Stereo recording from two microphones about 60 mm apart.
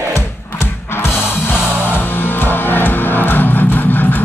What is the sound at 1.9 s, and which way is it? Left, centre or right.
Music, left.